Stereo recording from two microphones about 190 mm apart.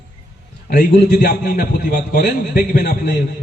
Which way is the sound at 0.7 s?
55° left (ahead or behind).